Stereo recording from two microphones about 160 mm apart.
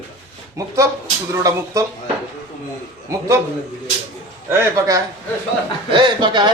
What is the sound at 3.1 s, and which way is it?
Speech, 20° right (ahead or behind).